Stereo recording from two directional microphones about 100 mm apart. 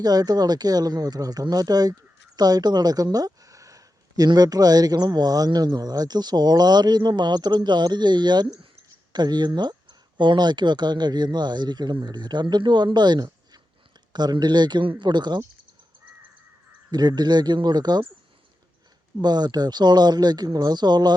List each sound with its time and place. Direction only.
0.0 s speech: 40° right (ahead or behind)
16.9 s speech: 45° right (ahead or behind)
19.2 s speech: 45° right (ahead or behind)